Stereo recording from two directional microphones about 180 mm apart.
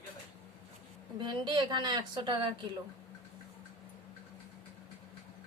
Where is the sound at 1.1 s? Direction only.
25° right (ahead or behind).